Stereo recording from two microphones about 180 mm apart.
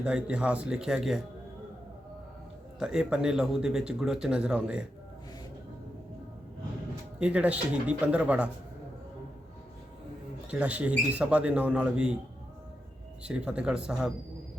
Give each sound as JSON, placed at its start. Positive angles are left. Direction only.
{"t": 0.0, "sound": "speech", "side_deg": -5}
{"t": 2.7, "sound": "speech", "side_deg": -5}
{"t": 7.2, "sound": "a man's voice", "side_deg": -5}
{"t": 10.5, "sound": "a man's voice", "side_deg": -5}
{"t": 13.2, "sound": "speech", "side_deg": -5}